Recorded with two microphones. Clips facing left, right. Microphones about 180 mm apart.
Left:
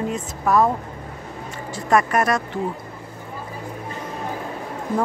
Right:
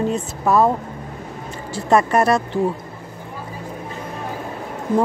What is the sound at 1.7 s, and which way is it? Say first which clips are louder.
Speech: right 3 dB; 30° right (ahead or behind).